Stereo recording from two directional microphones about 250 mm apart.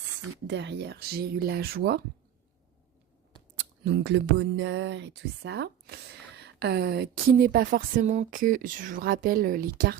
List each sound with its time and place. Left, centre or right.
0.4 s speech: right
3.6 s speech: right